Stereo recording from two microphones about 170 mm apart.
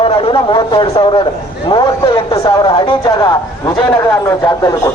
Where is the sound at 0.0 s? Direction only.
30° left (ahead or behind).